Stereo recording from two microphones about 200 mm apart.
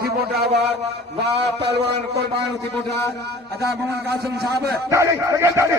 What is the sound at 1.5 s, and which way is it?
Speech, 55° right (ahead or behind).